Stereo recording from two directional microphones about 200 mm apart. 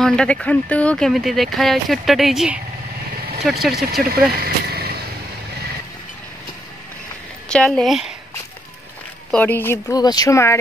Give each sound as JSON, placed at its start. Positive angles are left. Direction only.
{"t": 0.0, "sound": "speech", "side_deg": 5}
{"t": 4.1, "sound": "a sound", "side_deg": -50}
{"t": 7.4, "sound": "speech", "side_deg": 5}
{"t": 9.3, "sound": "speech", "side_deg": 10}